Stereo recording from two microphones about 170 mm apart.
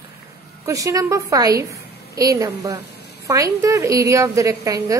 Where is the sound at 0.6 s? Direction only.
20° right (ahead or behind).